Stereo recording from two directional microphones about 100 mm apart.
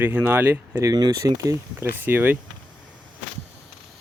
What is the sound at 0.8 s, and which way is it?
Speech, 40° right (ahead or behind).